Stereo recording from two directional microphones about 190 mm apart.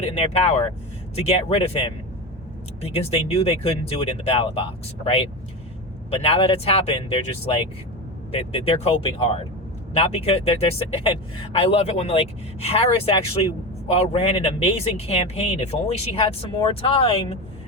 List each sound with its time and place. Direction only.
0.2 s speech: 35° left (ahead or behind)